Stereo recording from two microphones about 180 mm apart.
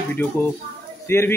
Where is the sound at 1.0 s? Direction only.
15° left (ahead or behind).